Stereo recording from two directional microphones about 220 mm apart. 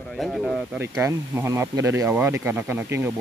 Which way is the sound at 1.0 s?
15° right (ahead or behind).